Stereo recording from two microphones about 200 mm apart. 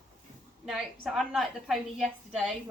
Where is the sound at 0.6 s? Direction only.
Centre (ahead or behind).